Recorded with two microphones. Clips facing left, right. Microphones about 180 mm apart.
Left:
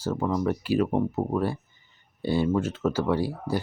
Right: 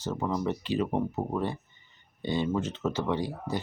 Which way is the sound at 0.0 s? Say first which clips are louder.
Left 4 dB; 10° left (ahead or behind).